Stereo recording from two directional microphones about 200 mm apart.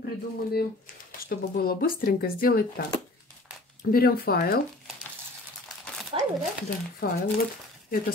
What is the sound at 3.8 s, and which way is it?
Speech, 50° left (ahead or behind).